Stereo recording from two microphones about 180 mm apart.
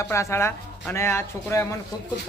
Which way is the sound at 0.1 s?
15° left (ahead or behind).